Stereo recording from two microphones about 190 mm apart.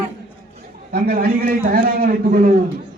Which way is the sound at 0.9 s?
50° right (ahead or behind).